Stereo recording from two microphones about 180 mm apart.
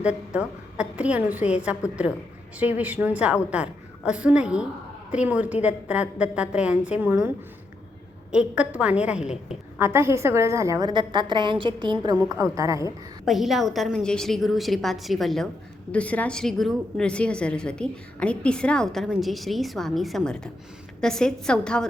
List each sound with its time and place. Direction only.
0.0 s a woman's voice: 5° right (ahead or behind)
13.2 s a woman's voice: centre (ahead or behind)